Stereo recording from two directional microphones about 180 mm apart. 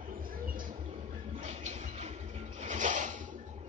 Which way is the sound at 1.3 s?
40° right (ahead or behind).